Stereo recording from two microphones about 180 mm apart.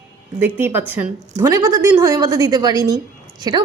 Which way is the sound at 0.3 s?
10° right (ahead or behind).